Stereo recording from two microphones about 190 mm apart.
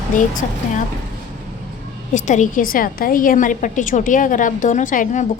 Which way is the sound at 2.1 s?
40° left (ahead or behind).